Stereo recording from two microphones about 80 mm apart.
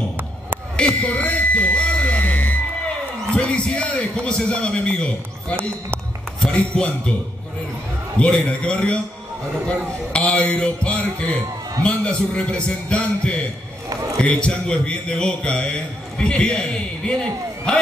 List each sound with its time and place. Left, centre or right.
0.7 s a sound: centre
3.3 s a man's voice: centre
6.4 s a man's voice: centre
8.2 s a man's voice: centre
10.1 s a man's voice: centre